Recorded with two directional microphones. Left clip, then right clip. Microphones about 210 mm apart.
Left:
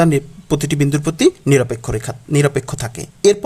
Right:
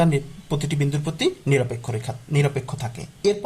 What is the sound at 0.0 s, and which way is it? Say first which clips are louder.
Speech: left 7 dB; 35° left (ahead or behind).